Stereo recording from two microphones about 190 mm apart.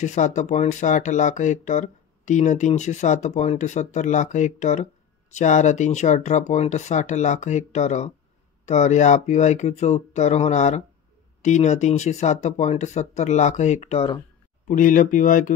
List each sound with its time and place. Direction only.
0.0 s speech: 40° left (ahead or behind)